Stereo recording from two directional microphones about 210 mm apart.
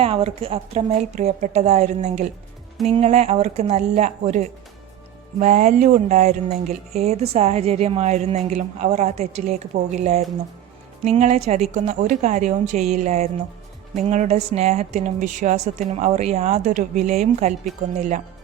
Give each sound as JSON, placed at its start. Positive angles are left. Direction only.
{"t": 0.0, "sound": "speech", "side_deg": -25}